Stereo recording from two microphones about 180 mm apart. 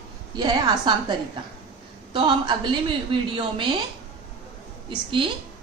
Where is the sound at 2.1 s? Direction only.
25° right (ahead or behind).